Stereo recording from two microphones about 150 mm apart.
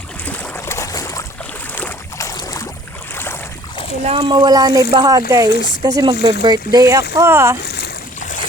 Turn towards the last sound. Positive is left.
turn(degrees=-15)  # may be behind; listen again after turning